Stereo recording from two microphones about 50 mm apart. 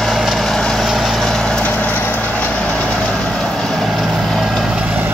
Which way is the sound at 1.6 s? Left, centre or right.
Left.